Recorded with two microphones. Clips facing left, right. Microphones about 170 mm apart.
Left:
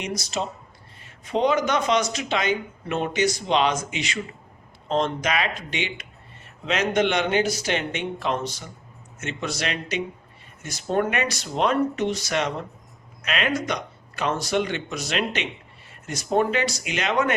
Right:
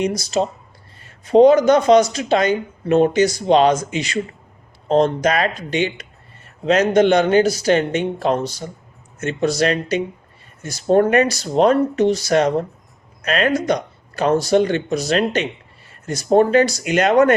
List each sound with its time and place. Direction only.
0.0 s speech: 35° right (ahead or behind)